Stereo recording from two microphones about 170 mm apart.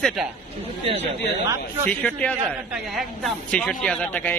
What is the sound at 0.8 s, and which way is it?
Speech, 35° right (ahead or behind).